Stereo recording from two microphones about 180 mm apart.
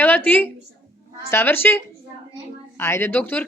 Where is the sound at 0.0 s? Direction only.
10° left (ahead or behind).